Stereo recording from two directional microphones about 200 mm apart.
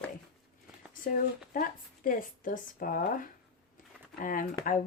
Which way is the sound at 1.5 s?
45° left (ahead or behind).